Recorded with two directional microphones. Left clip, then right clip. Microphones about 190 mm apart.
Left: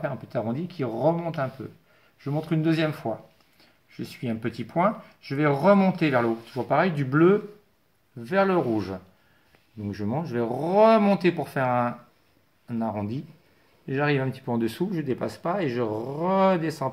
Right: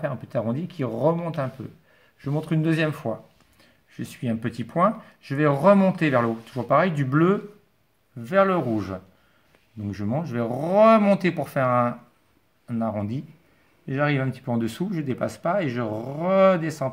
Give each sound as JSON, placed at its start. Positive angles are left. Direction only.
{"t": 0.0, "sound": "speech", "side_deg": -40}
{"t": 3.9, "sound": "speech", "side_deg": -45}